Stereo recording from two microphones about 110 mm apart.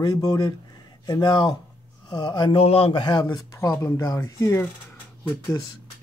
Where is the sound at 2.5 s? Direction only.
60° left (ahead or behind); by 3.4 s 40° left (ahead or behind).